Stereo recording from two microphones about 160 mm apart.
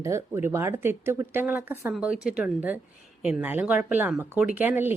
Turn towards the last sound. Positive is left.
turn(degrees=-10)  # may be behind; listen again after turning